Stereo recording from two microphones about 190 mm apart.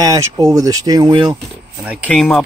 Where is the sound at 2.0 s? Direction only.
5° left (ahead or behind).